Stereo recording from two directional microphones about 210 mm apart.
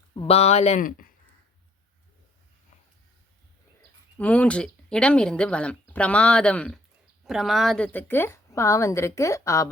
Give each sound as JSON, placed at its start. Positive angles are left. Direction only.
{"t": 0.1, "sound": "speech", "side_deg": 25}
{"t": 4.2, "sound": "a woman's voice", "side_deg": 5}